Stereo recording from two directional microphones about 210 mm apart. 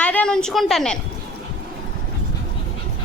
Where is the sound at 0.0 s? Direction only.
5° left (ahead or behind).